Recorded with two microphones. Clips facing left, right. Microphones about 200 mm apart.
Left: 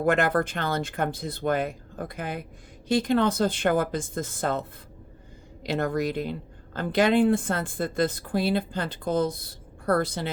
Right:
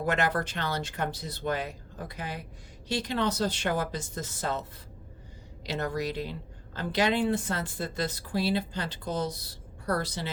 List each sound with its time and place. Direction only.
0.0 s a woman's voice: 50° left (ahead or behind)
5.6 s a woman's voice: 55° left (ahead or behind)